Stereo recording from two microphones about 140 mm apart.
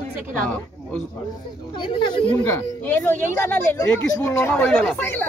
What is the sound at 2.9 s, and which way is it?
Speech, 15° left (ahead or behind).